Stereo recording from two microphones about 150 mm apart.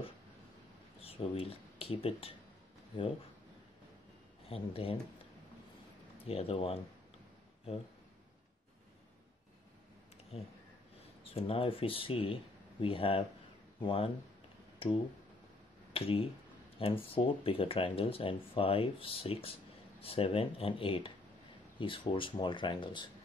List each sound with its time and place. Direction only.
1.0 s speech: 40° left (ahead or behind)
4.5 s speech: 40° left (ahead or behind)
6.2 s speech: 40° left (ahead or behind)
10.3 s speech: 40° left (ahead or behind)